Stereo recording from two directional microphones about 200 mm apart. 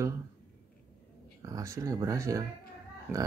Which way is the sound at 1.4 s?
15° right (ahead or behind).